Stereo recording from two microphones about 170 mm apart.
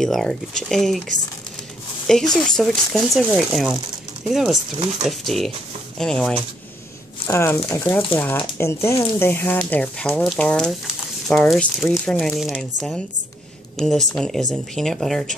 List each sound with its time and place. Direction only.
0.0 s speech: centre (ahead or behind)
7.2 s speech: 15° left (ahead or behind)